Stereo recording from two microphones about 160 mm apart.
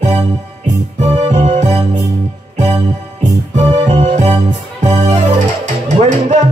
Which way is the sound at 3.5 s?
45° right (ahead or behind).